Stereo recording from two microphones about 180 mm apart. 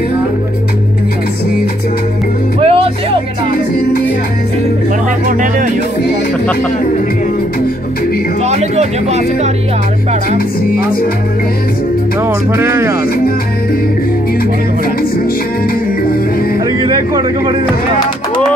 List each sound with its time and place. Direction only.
2.6 s music: 30° right (ahead or behind)
8.5 s music: 40° right (ahead or behind)
10.3 s music: 55° left (ahead or behind)
12.3 s speech: 15° right (ahead or behind)
16.8 s a sound: 25° right (ahead or behind)